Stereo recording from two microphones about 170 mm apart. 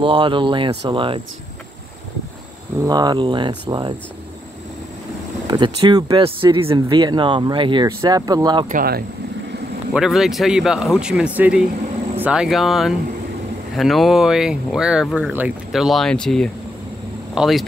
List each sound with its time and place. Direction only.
0.0 s speech: 30° right (ahead or behind)
2.8 s speech: 25° right (ahead or behind)
5.5 s speech: 25° right (ahead or behind)
8.6 s speech: 60° right (ahead or behind)
9.9 s speech: centre (ahead or behind)